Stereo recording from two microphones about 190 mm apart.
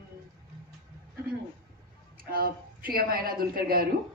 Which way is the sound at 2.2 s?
50° right (ahead or behind).